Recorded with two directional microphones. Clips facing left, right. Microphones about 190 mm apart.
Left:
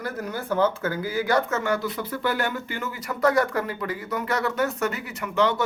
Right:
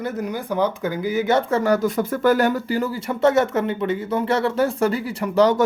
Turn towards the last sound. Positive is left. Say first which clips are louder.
# right 7 dB
turn(degrees=-40)  # may be behind; listen again after turning